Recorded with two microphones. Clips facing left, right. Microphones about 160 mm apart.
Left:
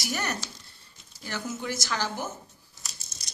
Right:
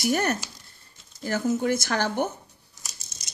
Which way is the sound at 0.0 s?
50° right (ahead or behind).